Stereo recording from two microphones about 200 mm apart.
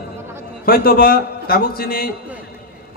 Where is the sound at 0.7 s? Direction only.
45° left (ahead or behind).